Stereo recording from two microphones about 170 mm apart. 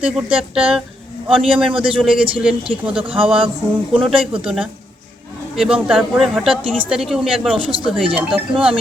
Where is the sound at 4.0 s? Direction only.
5° right (ahead or behind).